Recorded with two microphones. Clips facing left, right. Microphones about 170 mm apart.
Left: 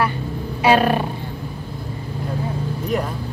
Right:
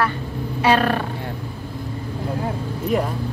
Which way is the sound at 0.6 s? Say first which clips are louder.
Left 2 dB; 10° left (ahead or behind).